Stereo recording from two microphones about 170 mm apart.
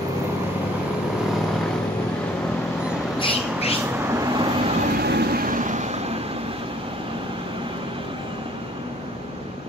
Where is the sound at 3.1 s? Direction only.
30° left (ahead or behind).